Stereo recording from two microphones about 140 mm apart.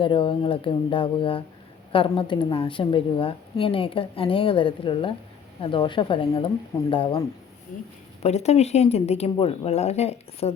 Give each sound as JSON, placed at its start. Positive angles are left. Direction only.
{"t": 0.0, "sound": "a woman's voice", "side_deg": 35}
{"t": 8.2, "sound": "speech", "side_deg": 50}